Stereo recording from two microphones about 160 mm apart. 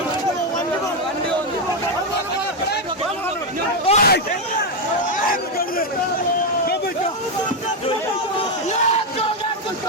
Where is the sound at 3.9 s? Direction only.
35° left (ahead or behind).